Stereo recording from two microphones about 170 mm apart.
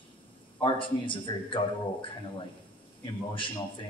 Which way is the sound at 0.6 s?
30° left (ahead or behind).